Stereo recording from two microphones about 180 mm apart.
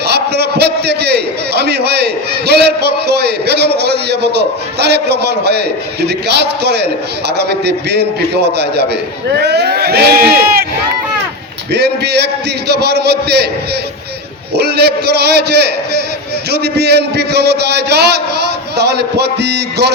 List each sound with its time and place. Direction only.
0.0 s a sound: 65° right (ahead or behind)
3.2 s a man's voice: 65° right (ahead or behind)
12.7 s a man's voice: 65° right (ahead or behind)
14.5 s a man's voice: 65° right (ahead or behind)